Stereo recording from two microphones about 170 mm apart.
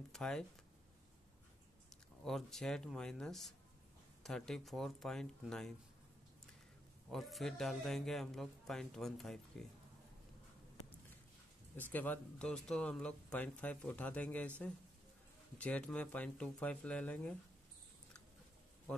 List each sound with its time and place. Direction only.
0.1 s speech: 5° left (ahead or behind)
2.2 s a man's voice: centre (ahead or behind)
7.1 s a man's voice: centre (ahead or behind)
11.9 s speech: 10° left (ahead or behind)
15.5 s speech: 5° left (ahead or behind)